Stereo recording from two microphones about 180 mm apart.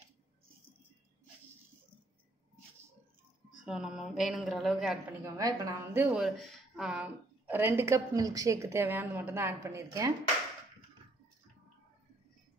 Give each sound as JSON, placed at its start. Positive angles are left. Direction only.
{"t": 3.6, "sound": "a woman's voice", "side_deg": -5}
{"t": 5.2, "sound": "a woman's voice", "side_deg": -20}
{"t": 6.0, "sound": "a woman's voice", "side_deg": -5}